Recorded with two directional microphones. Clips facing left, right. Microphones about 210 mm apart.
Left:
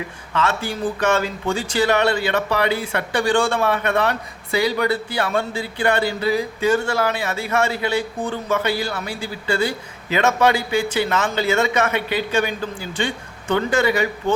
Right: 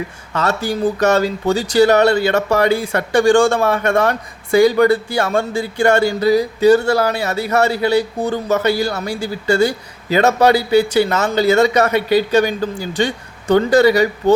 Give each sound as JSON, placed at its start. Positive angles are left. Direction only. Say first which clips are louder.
{"t": 0.3, "sound": "speech", "louder": "right 4 dB", "side_deg": -40}